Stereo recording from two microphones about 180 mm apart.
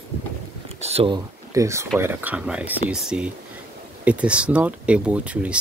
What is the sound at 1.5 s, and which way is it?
Speech, 15° right (ahead or behind).